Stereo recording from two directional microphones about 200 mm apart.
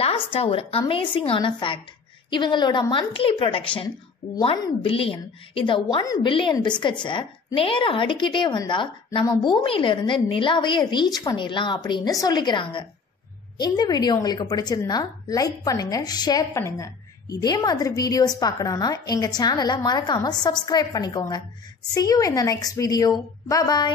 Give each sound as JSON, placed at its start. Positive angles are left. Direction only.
{"t": 0.0, "sound": "a woman's voice", "side_deg": 30}